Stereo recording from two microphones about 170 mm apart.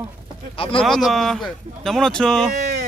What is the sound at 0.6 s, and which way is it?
Speech, 30° left (ahead or behind).